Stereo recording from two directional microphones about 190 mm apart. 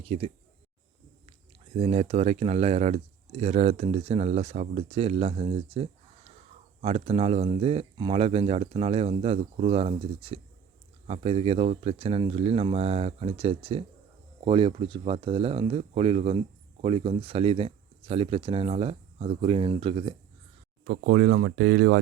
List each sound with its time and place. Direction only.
0.0 s speech: 30° right (ahead or behind)
1.7 s speech: 35° right (ahead or behind)
20.8 s speech: 60° right (ahead or behind)